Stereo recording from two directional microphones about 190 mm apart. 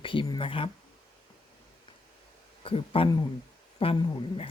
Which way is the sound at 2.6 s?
30° left (ahead or behind).